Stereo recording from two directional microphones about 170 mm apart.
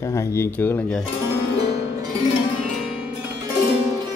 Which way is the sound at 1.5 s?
25° right (ahead or behind).